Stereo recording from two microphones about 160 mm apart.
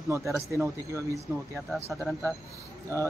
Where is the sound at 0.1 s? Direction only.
20° right (ahead or behind).